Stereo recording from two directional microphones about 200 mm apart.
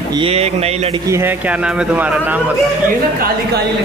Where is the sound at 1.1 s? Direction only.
10° right (ahead or behind).